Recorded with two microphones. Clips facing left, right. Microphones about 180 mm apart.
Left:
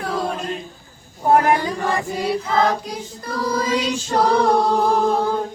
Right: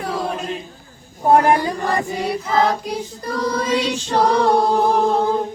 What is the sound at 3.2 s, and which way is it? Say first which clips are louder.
Chant: right 1 dB; 40° right (ahead or behind).